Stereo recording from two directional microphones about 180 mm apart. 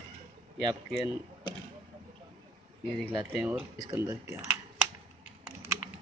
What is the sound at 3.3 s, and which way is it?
Speech, 10° right (ahead or behind).